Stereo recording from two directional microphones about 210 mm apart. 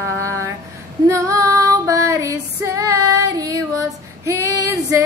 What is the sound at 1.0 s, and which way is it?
Female singing, 15° right (ahead or behind).